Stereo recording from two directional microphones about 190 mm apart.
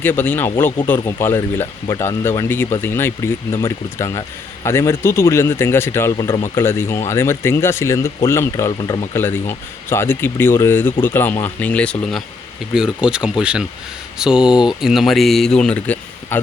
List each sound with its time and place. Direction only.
0.0 s speech: 10° left (ahead or behind)
6.1 s speech: 25° left (ahead or behind)
6.6 s speech: 10° left (ahead or behind)